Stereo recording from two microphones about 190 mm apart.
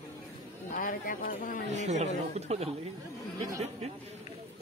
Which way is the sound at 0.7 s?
45° left (ahead or behind).